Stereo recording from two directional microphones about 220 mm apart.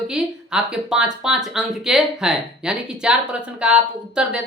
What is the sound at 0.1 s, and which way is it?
Speech, 5° right (ahead or behind).